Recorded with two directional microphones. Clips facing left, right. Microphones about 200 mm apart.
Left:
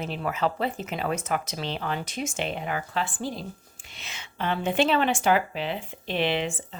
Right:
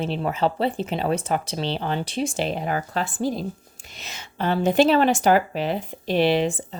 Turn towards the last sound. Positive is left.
turn(degrees=-35)  # may be behind; listen again after turning